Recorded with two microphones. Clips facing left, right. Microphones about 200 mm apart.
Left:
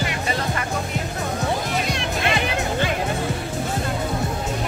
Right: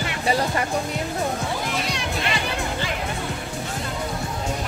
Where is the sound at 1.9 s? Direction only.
55° left (ahead or behind).